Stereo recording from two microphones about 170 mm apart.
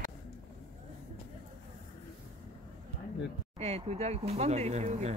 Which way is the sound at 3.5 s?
40° right (ahead or behind).